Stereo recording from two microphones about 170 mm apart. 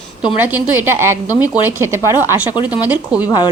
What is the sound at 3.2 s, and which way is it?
Sizzle, 25° left (ahead or behind).